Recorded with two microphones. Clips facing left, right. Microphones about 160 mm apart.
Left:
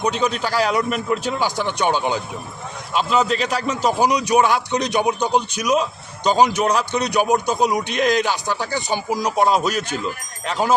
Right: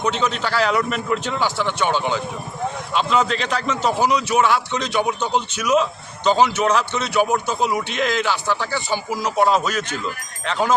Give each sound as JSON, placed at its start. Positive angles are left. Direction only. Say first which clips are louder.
{"t": 0.0, "sound": "a man's voice", "louder": "left 1 dB", "side_deg": 15}
{"t": 2.9, "sound": "a man's voice", "louder": "left 2 dB", "side_deg": 5}